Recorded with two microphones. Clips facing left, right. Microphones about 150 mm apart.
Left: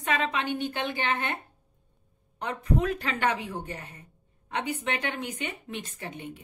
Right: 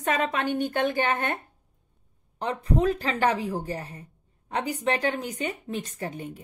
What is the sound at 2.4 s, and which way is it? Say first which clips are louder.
A woman's voice: right 2 dB; 30° right (ahead or behind).